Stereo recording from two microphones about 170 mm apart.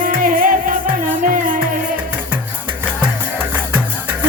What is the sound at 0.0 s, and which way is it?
Music, 55° right (ahead or behind).